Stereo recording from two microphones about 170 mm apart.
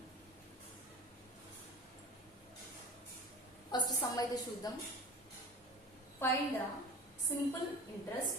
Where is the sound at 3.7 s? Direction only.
20° left (ahead or behind).